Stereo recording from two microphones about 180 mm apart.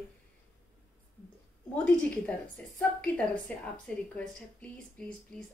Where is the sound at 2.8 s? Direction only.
5° left (ahead or behind).